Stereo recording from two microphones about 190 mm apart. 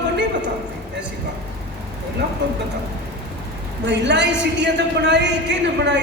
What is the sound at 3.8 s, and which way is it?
A woman's voice, 65° right (ahead or behind).